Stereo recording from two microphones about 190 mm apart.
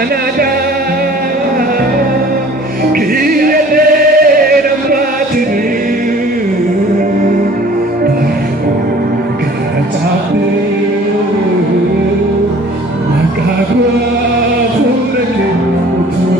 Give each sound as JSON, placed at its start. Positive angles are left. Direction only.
{"t": 2.9, "sound": "music", "side_deg": -50}